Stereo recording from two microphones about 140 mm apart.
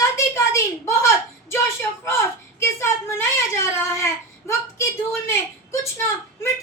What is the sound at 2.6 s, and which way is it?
A child's voice, 20° left (ahead or behind).